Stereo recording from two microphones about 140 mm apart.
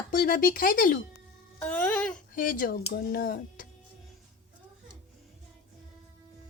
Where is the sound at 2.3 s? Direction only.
85° left.